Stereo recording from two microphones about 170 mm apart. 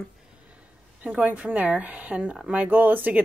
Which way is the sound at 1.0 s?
5° right (ahead or behind).